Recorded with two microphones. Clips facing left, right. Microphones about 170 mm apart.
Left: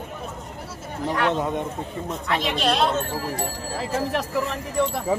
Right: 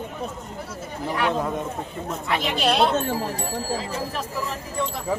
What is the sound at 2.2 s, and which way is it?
Speech, 5° right (ahead or behind).